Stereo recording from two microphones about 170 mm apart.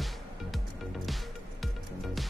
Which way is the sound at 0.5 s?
Centre (ahead or behind).